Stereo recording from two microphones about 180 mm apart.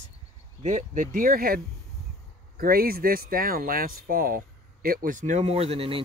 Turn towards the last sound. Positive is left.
turn(degrees=-35)  # may be behind; listen again after turning